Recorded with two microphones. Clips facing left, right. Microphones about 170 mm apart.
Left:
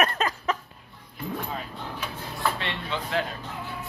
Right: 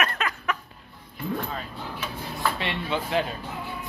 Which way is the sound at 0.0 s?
35° left (ahead or behind).